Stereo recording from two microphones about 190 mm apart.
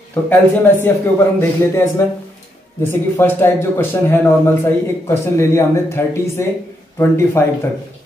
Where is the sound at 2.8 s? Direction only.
10° left (ahead or behind).